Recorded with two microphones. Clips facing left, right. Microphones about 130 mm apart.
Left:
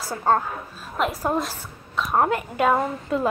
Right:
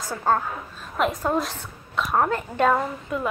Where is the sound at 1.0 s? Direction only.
Centre (ahead or behind).